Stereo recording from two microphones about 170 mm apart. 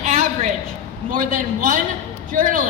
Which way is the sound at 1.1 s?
50° right (ahead or behind).